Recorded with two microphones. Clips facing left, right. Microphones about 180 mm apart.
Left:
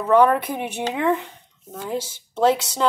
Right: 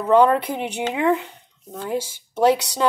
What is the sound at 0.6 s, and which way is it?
Speech, 15° right (ahead or behind).